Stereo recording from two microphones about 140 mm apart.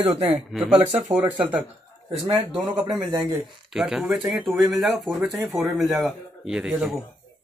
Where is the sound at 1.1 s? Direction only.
10° right (ahead or behind).